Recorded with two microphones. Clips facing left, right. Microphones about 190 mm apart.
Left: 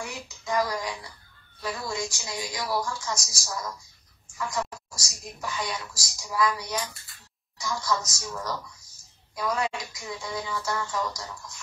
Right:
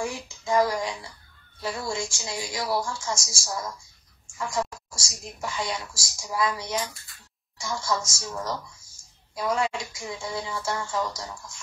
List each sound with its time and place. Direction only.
0.0 s speech: 25° right (ahead or behind)